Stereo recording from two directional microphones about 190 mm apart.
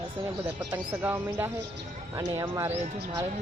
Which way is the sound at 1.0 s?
10° right (ahead or behind).